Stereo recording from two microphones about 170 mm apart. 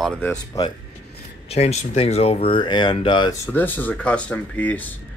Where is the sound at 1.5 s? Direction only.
40° left (ahead or behind).